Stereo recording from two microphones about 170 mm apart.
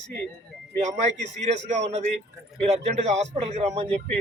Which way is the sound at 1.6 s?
40° right (ahead or behind).